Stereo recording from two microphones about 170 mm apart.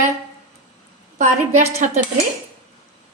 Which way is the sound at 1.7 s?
45° right (ahead or behind).